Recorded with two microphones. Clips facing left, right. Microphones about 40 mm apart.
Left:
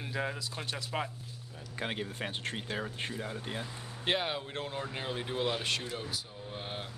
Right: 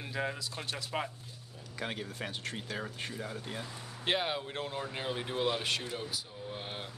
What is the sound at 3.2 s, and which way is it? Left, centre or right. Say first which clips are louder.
Speech: left 2 dB; centre.